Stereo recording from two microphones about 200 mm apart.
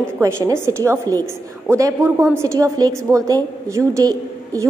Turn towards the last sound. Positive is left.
turn(degrees=-15)  # may be behind; listen again after turning